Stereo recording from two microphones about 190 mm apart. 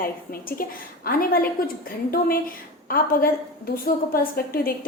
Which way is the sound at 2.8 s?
50° left (ahead or behind).